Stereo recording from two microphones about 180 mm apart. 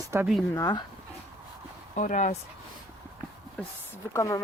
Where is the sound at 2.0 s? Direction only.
45° left (ahead or behind).